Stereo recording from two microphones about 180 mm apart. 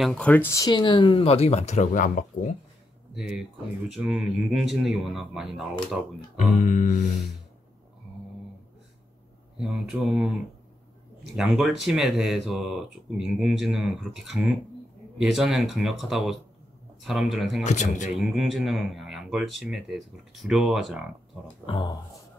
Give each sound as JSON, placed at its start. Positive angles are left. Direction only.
{"t": 0.0, "sound": "speech", "side_deg": 5}
{"t": 3.2, "sound": "speech", "side_deg": -5}
{"t": 6.3, "sound": "speech", "side_deg": 45}
{"t": 9.6, "sound": "speech", "side_deg": 0}
{"t": 17.6, "sound": "speech", "side_deg": 40}
{"t": 18.1, "sound": "speech", "side_deg": 0}
{"t": 21.6, "sound": "speech", "side_deg": 30}